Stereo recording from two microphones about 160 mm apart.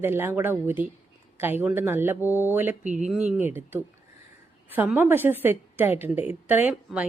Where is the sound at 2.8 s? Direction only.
50° right (ahead or behind).